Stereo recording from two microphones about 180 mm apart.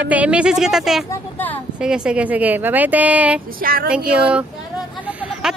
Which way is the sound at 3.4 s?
55° right (ahead or behind).